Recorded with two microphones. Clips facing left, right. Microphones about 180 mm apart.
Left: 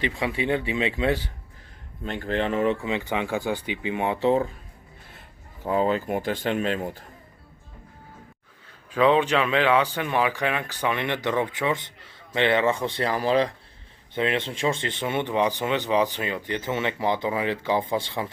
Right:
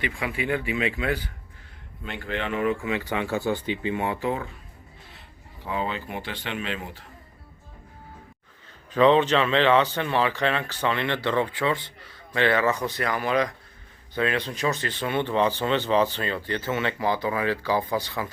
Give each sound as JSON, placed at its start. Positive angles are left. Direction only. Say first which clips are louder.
{"t": 0.0, "sound": "speech", "louder": "left 3 dB", "side_deg": 30}
{"t": 2.0, "sound": "speech", "louder": "left 4 dB", "side_deg": 40}
{"t": 5.6, "sound": "speech", "louder": "left 7 dB", "side_deg": 45}
{"t": 8.9, "sound": "speech", "louder": "right 1 dB", "side_deg": 10}